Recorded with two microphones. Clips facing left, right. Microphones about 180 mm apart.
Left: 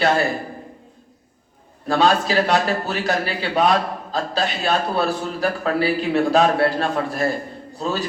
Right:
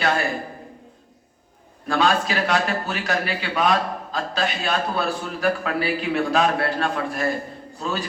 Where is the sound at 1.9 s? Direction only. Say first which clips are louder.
Left 3 dB; 35° left (ahead or behind).